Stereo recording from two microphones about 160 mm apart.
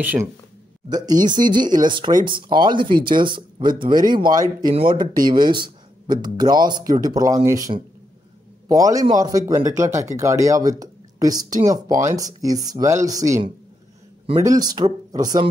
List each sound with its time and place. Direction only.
0.0 s speech: 10° right (ahead or behind)
0.8 s a man's voice: 25° right (ahead or behind)